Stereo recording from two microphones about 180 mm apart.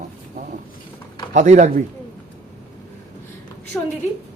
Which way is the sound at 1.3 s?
40° right (ahead or behind).